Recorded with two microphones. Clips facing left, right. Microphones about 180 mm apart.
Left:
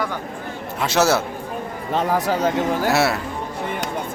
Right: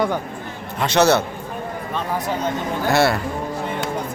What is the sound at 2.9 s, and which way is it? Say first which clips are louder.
Speech: right 5 dB; 5° left (ahead or behind).